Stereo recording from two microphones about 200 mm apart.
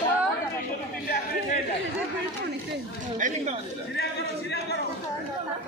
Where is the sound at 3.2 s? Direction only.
40° right (ahead or behind).